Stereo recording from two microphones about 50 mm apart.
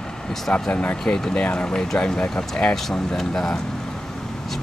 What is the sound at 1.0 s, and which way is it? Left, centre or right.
Speech, centre.